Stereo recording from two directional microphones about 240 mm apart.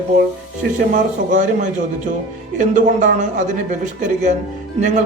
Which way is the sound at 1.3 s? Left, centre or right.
Right.